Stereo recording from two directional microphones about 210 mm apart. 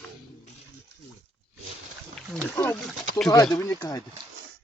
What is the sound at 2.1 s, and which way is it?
Wild animals, 5° left (ahead or behind).